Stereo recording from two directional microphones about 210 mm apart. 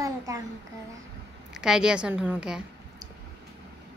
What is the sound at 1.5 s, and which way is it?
A woman's voice, 5° right (ahead or behind).